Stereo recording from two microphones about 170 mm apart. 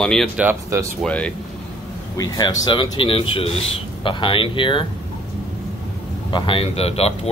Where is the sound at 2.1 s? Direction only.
20° left (ahead or behind).